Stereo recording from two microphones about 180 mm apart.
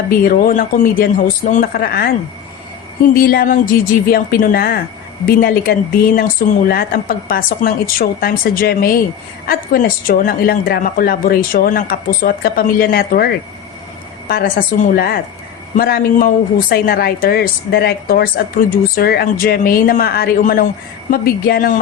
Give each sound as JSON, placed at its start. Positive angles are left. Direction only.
{"t": 0.1, "sound": "speech", "side_deg": 50}
{"t": 3.2, "sound": "speech", "side_deg": 55}